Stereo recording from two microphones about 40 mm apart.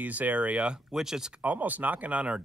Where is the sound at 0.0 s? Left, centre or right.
Right.